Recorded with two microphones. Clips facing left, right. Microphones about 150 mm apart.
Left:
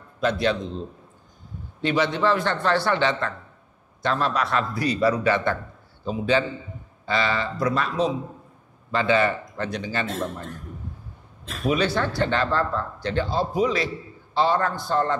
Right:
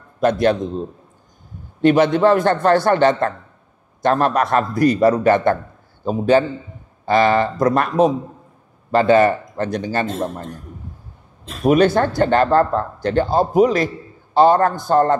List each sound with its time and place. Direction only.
0.2 s speech: 50° right (ahead or behind)